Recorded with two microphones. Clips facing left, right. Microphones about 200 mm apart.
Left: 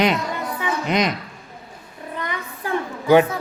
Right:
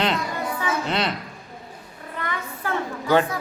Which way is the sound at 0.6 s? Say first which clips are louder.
Left 4 dB; 15° left (ahead or behind).